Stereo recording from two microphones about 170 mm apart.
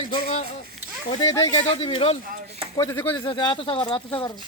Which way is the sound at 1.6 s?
35° left (ahead or behind).